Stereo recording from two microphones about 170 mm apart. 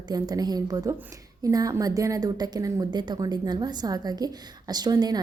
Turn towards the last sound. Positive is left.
turn(degrees=-25)  # may be behind; listen again after turning